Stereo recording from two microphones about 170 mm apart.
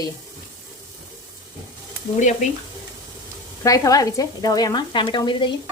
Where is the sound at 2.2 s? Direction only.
45° left (ahead or behind).